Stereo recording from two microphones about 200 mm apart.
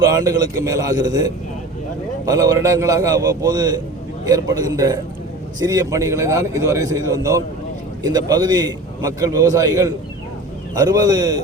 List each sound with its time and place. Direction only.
0.1 s a man's voice: 20° right (ahead or behind)